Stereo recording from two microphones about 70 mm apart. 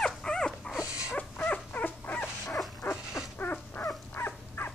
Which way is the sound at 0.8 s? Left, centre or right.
Centre.